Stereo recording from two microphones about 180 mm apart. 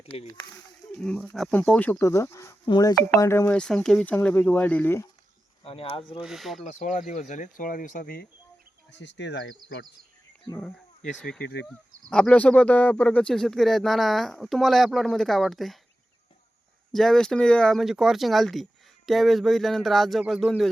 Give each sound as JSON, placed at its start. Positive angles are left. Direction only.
{"t": 0.0, "sound": "a sound", "side_deg": 30}
{"t": 1.0, "sound": "speech", "side_deg": 5}
{"t": 5.6, "sound": "speech", "side_deg": 30}
{"t": 6.2, "sound": "speech", "side_deg": 0}
{"t": 6.6, "sound": "speech", "side_deg": 40}
{"t": 8.9, "sound": "speech", "side_deg": 80}
{"t": 11.2, "sound": "speech", "side_deg": 5}
{"t": 16.9, "sound": "speech", "side_deg": 0}